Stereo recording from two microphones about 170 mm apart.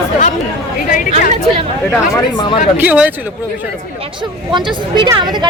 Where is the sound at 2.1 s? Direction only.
25° left (ahead or behind).